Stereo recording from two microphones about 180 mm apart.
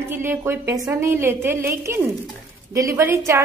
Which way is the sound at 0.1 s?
10° right (ahead or behind).